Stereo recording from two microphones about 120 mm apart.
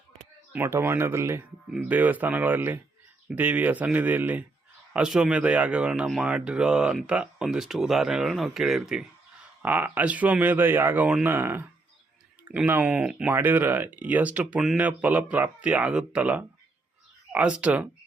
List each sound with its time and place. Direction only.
0.5 s speech: 20° right (ahead or behind)